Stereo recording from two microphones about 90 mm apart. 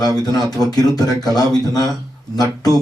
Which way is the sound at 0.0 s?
45° left (ahead or behind).